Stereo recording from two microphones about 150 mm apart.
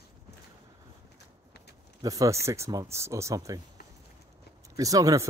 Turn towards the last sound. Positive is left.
turn(degrees=-25)  # may be behind; listen again after turning